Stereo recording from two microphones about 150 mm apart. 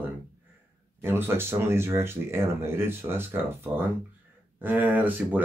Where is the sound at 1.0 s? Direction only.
15° right (ahead or behind).